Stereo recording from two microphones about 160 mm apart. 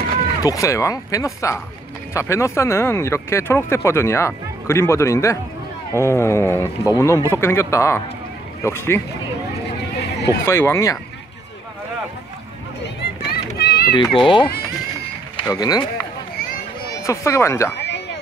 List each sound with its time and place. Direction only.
0.4 s speech: 20° left (ahead or behind)
10.4 s speech: 15° left (ahead or behind)
12.8 s run: 85° left
13.9 s speech: 30° left (ahead or behind)
15.5 s speech: 25° left (ahead or behind)
16.9 s speech: 20° left (ahead or behind)
17.7 s a sound: 90° left